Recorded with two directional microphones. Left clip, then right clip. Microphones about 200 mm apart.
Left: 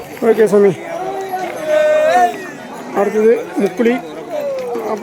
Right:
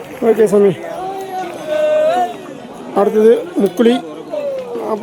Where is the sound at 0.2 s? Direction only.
Centre (ahead or behind).